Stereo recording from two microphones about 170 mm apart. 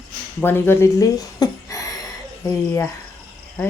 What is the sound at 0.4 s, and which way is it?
Speech, 15° left (ahead or behind).